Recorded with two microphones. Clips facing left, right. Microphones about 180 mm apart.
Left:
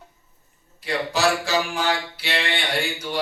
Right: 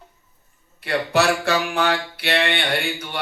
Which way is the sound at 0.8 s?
60° right (ahead or behind).